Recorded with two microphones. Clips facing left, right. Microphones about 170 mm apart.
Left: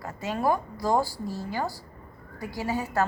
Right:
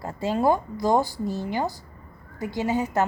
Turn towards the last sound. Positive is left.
turn(degrees=-20)  # may be behind; listen again after turning